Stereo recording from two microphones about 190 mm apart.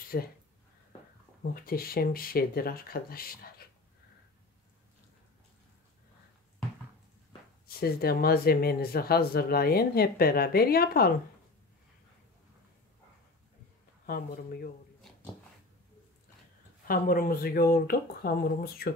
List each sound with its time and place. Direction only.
0.1 s speech: 50° left (ahead or behind)
1.4 s speech: 50° left (ahead or behind)
7.6 s speech: 55° left (ahead or behind)
14.0 s speech: 50° left (ahead or behind)
16.8 s speech: 50° left (ahead or behind)